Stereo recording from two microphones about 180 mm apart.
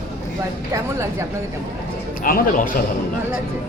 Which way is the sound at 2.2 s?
50° left (ahead or behind).